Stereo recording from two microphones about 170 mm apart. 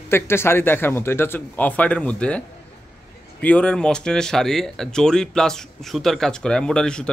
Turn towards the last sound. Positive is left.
turn(degrees=5)  # may be behind; listen again after turning